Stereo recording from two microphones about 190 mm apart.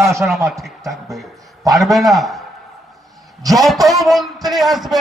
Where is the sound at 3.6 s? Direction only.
Centre (ahead or behind).